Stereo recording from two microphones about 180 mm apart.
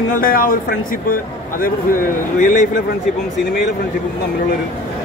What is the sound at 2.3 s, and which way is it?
Speech, 45° left (ahead or behind).